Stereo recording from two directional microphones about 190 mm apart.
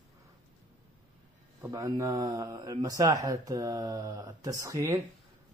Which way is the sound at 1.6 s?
20° right (ahead or behind).